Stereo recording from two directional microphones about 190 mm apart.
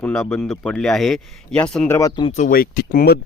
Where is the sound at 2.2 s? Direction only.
35° left (ahead or behind).